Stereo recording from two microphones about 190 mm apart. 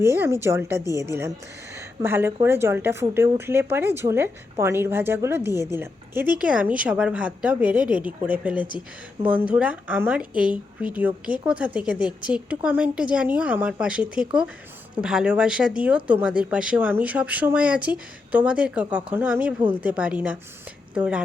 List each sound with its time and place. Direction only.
0.0 s a woman's voice: 15° right (ahead or behind)
0.9 s a woman's voice: 20° left (ahead or behind)
1.7 s a woman's voice: 15° right (ahead or behind)